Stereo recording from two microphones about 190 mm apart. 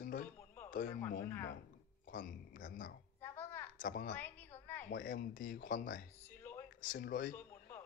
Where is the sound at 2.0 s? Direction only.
45° left (ahead or behind).